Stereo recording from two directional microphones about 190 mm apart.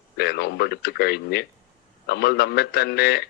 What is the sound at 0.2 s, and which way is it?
A man's voice, 60° left (ahead or behind).